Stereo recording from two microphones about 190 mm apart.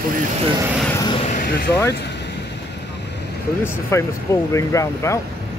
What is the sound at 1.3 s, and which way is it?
Vehicle, 50° left (ahead or behind).